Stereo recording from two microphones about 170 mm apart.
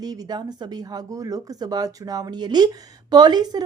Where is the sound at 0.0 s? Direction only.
20° right (ahead or behind).